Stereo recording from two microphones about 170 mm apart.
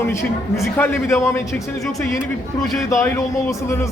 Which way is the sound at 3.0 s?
15° left (ahead or behind).